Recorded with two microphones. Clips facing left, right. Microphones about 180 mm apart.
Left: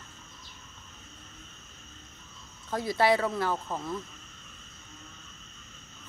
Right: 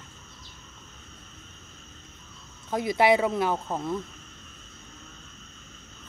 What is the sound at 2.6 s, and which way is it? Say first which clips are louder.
Speech: right 3 dB; 15° right (ahead or behind).